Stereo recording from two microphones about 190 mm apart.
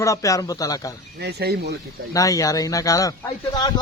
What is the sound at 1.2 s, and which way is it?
Speech, 60° right (ahead or behind).